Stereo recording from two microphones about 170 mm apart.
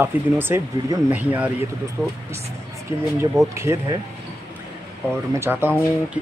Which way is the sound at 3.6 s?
15° right (ahead or behind).